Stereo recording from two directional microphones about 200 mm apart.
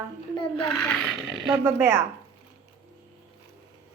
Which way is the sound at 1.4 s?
10° right (ahead or behind).